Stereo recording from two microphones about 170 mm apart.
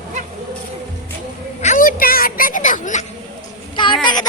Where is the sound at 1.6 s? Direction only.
50° left (ahead or behind).